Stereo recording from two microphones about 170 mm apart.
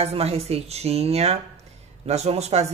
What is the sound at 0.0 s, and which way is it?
A man's voice, 35° right (ahead or behind).